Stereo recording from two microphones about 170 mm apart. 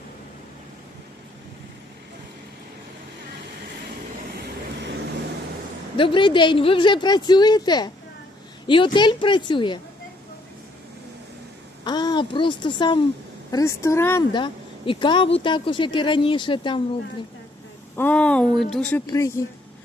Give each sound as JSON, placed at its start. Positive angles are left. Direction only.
{"t": 4.4, "sound": "vehicle", "side_deg": -75}
{"t": 6.0, "sound": "a woman's voice", "side_deg": 30}
{"t": 11.9, "sound": "a woman's voice", "side_deg": 25}
{"t": 14.3, "sound": "a woman's voice", "side_deg": 30}
{"t": 17.9, "sound": "speech", "side_deg": 10}
{"t": 19.0, "sound": "speech", "side_deg": 20}